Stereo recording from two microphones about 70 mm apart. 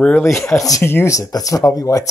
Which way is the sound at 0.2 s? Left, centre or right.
Left.